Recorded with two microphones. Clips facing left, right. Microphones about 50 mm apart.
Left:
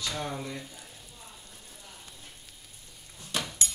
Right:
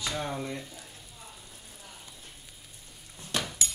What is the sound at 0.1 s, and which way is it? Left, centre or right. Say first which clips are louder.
Speech: right 1 dB; centre.